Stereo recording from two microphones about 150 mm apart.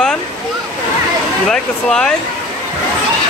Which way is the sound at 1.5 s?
5° left (ahead or behind).